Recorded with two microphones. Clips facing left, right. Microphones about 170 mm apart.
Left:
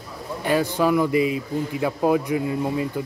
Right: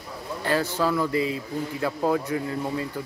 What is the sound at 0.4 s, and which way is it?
A man's voice, 15° left (ahead or behind).